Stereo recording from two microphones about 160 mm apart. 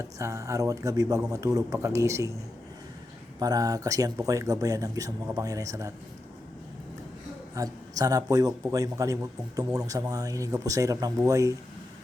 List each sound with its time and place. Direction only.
0.0 s a man's voice: 20° right (ahead or behind)
3.4 s a man's voice: 25° right (ahead or behind)
7.5 s a man's voice: 20° right (ahead or behind)